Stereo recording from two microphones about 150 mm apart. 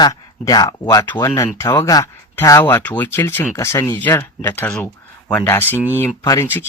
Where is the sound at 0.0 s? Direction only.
25° left (ahead or behind).